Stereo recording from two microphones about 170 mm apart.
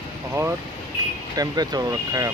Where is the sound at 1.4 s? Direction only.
25° right (ahead or behind).